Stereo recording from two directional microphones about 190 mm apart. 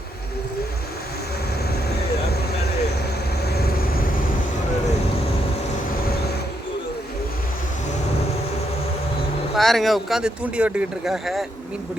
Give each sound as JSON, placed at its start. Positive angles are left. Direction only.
{"t": 3.4, "sound": "vehicle", "side_deg": 55}
{"t": 9.6, "sound": "speech", "side_deg": 0}